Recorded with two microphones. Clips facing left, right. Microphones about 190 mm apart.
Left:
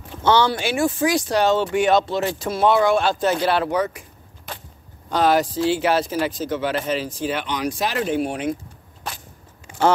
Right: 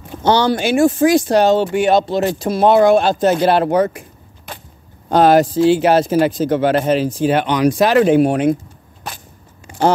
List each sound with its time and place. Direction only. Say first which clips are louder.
0.2 s speech: right 4 dB; 40° right (ahead or behind)
5.1 s speech: right 7 dB; 55° right (ahead or behind)